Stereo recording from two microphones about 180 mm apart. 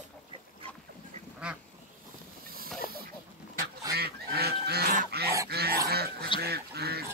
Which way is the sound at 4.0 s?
60° right (ahead or behind).